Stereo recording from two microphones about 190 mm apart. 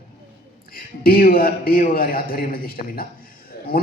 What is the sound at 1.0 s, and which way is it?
A man's voice, 50° left (ahead or behind).